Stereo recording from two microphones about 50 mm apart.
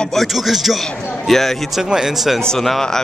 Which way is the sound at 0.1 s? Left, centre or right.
Centre.